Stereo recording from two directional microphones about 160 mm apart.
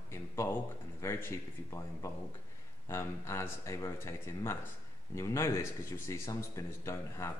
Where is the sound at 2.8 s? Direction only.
15° left (ahead or behind).